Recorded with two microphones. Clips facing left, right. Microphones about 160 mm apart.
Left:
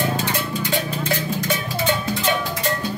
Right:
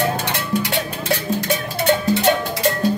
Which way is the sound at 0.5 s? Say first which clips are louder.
Right 2 dB; 75° right (ahead or behind).